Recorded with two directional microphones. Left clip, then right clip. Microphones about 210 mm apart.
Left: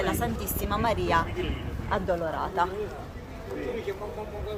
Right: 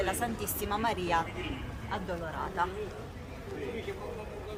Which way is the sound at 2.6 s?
35° left (ahead or behind).